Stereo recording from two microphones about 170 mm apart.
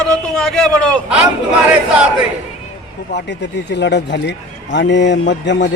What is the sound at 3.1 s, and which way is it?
Speech, 90° left.